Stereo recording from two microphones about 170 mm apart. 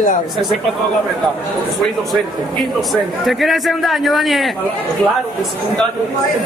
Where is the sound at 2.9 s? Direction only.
Centre (ahead or behind).